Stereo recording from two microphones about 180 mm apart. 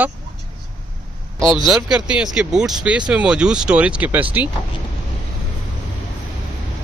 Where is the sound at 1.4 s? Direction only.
Centre (ahead or behind).